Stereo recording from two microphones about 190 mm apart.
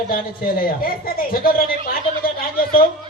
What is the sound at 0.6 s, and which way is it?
A man's voice, 50° left (ahead or behind).